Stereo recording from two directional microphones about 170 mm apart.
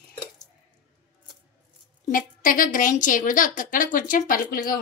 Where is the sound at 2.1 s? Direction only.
55° left (ahead or behind).